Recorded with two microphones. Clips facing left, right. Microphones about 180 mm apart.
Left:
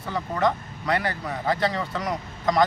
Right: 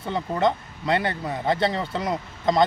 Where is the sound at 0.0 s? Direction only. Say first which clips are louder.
Right 2 dB; 25° right (ahead or behind).